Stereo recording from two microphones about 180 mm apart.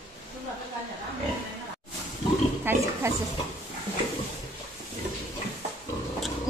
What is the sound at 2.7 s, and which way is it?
Pig, 10° right (ahead or behind).